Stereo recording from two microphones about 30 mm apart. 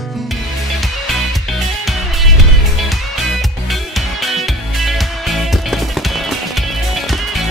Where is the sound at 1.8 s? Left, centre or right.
Centre.